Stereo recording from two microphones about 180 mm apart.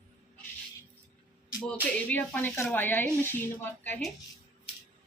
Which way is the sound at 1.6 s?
10° left (ahead or behind).